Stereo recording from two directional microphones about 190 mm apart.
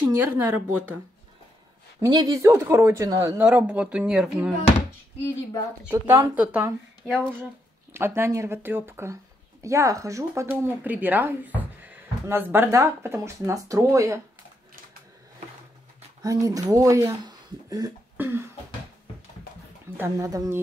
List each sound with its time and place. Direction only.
0.0 s speech: 10° right (ahead or behind)
2.0 s speech: 20° right (ahead or behind)
5.9 s speech: 15° right (ahead or behind)
16.2 s speech: 20° right (ahead or behind)
18.1 s cough: 10° right (ahead or behind)
20.0 s speech: 15° right (ahead or behind)